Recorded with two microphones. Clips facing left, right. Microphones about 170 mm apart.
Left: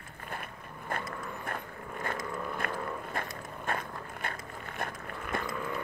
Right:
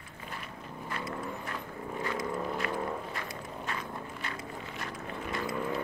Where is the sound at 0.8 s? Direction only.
50° left (ahead or behind).